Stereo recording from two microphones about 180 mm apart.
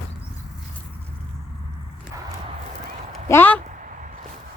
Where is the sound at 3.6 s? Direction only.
45° right (ahead or behind).